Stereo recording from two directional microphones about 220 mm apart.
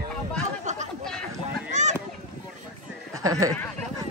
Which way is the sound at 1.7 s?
30° right (ahead or behind).